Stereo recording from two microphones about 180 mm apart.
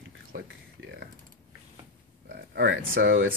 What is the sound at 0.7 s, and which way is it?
Typing, 80° right.